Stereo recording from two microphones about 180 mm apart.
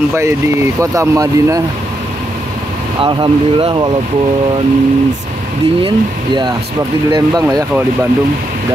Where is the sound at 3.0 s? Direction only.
30° right (ahead or behind).